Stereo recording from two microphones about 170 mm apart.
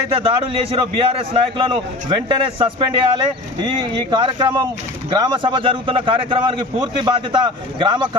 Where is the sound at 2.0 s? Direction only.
30° right (ahead or behind).